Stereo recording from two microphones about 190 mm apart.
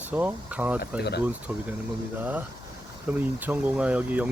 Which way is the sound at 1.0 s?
60° left (ahead or behind).